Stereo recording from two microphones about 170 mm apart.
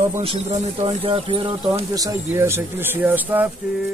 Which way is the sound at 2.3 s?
15° right (ahead or behind).